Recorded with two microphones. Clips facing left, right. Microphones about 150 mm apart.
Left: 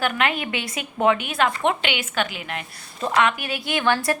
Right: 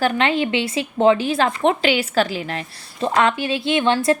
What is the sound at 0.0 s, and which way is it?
A woman's voice, 30° right (ahead or behind).